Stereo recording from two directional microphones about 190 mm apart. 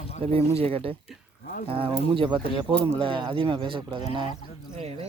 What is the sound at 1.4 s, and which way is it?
Speech, 50° left (ahead or behind).